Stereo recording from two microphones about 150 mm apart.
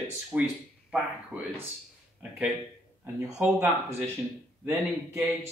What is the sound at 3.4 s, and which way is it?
Speech, 10° right (ahead or behind).